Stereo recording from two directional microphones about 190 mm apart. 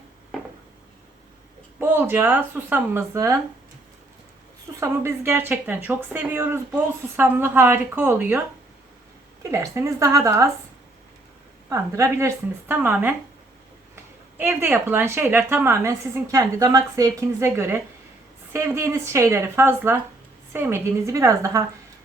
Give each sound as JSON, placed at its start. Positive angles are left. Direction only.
{"t": 1.8, "sound": "a woman's voice", "side_deg": -10}
{"t": 4.8, "sound": "a woman's voice", "side_deg": -15}
{"t": 9.5, "sound": "a woman's voice", "side_deg": -15}
{"t": 11.7, "sound": "a woman's voice", "side_deg": -15}